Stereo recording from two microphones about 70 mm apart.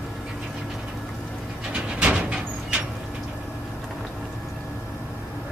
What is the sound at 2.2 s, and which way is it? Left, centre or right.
Vehicle, centre.